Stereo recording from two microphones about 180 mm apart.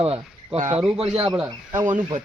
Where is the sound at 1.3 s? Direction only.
5° right (ahead or behind).